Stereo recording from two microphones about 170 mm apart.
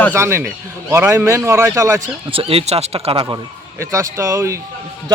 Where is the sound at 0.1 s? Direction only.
15° right (ahead or behind).